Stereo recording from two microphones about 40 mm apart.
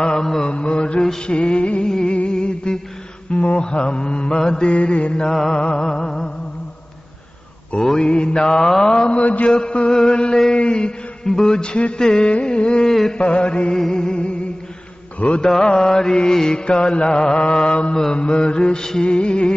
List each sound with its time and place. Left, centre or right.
0.0 s mantra: centre
0.4 s mantra: left
1.9 s a sound: centre
3.3 s speech: left
3.5 s mantra: left
4.7 s mantra: left
7.7 s mantra: centre
9.1 s mantra: left
9.5 s mantra: left
11.2 s mantra: centre
15.1 s mantra: left
15.4 s mantra: centre